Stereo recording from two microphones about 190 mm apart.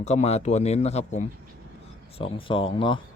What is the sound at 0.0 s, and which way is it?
Speech, 35° left (ahead or behind).